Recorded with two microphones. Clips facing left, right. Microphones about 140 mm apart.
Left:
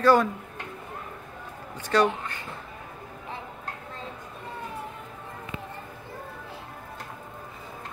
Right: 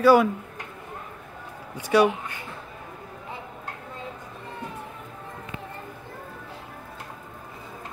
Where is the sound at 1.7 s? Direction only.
10° right (ahead or behind).